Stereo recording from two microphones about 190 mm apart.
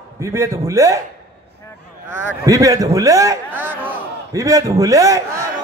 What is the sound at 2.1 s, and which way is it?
A man's voice, 15° right (ahead or behind).